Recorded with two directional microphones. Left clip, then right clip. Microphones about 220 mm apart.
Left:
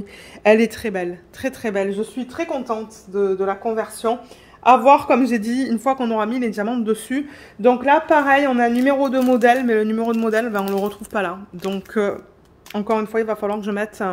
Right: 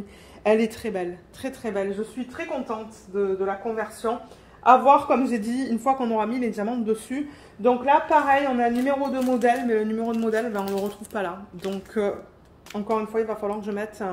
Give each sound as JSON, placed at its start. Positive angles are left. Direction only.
{"t": 0.4, "sound": "a woman's voice", "side_deg": 40}